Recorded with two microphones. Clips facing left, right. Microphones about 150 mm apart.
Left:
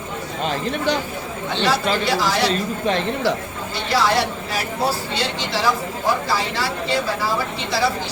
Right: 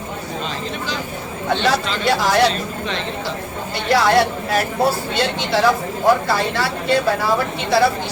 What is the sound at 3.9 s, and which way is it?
A woman's voice, 55° right (ahead or behind).